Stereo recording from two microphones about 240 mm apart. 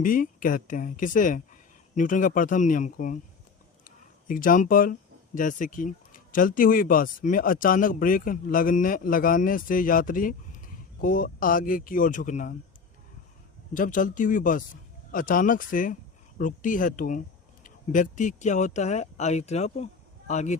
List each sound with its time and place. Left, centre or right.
0.0 s speech: left
13.7 s speech: left